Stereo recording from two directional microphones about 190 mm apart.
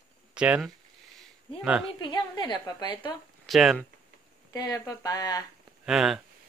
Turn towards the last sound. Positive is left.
turn(degrees=0)  # may be behind; listen again after turning